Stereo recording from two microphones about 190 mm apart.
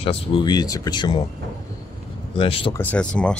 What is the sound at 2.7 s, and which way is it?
Speech, 5° left (ahead or behind).